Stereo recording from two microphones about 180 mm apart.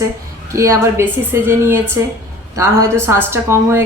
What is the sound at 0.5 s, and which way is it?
A woman's voice, 15° right (ahead or behind).